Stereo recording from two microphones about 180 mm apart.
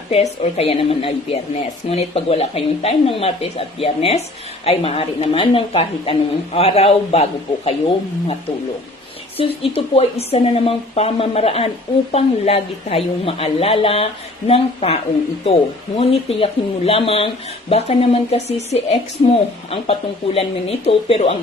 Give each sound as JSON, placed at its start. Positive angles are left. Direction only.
{"t": 0.1, "sound": "speech", "side_deg": 35}
{"t": 9.4, "sound": "speech", "side_deg": 30}
{"t": 16.0, "sound": "speech", "side_deg": 35}